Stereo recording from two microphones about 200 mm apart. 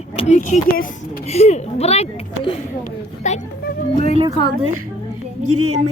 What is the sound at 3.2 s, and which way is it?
Speech, 35° left (ahead or behind).